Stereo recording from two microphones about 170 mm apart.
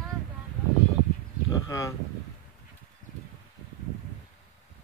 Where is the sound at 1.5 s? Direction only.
20° left (ahead or behind).